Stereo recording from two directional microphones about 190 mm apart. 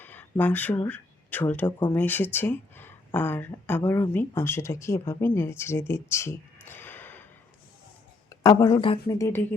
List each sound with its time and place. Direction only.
0.0 s speech: 10° left (ahead or behind)
5.9 s a sound: 15° left (ahead or behind)
8.3 s speech: 20° left (ahead or behind)
9.1 s speech: 15° left (ahead or behind)